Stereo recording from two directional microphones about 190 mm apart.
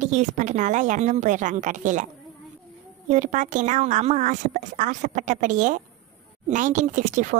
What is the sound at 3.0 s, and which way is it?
A woman's voice, 40° right (ahead or behind).